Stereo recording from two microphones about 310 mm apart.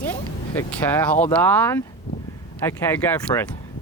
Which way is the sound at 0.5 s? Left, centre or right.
Centre.